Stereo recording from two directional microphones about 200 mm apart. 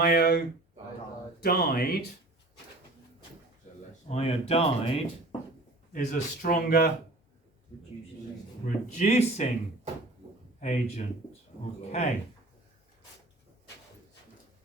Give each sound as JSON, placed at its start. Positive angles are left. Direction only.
{"t": 0.0, "sound": "speech", "side_deg": 50}
{"t": 4.1, "sound": "speech", "side_deg": 30}
{"t": 8.6, "sound": "speech", "side_deg": 35}
{"t": 10.6, "sound": "speech", "side_deg": 35}